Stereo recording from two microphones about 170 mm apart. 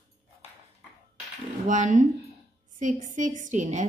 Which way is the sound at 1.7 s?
50° right (ahead or behind).